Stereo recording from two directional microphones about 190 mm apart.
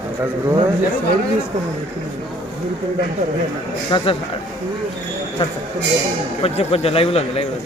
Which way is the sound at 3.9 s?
25° left (ahead or behind).